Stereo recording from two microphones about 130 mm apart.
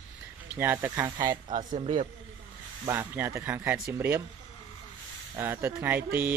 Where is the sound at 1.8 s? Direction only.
70° right (ahead or behind).